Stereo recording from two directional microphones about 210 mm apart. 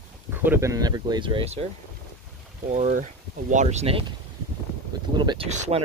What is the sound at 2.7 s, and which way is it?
Speech, 35° right (ahead or behind).